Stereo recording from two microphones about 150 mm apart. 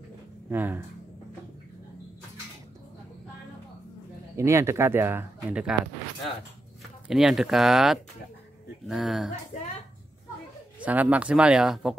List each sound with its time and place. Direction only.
0.5 s speech: 10° right (ahead or behind)
4.4 s speech: 20° right (ahead or behind)
7.1 s speech: 5° right (ahead or behind)
10.9 s speech: 10° right (ahead or behind)